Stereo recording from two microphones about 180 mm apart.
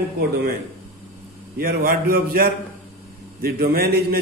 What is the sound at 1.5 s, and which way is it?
A man's voice, 55° right (ahead or behind).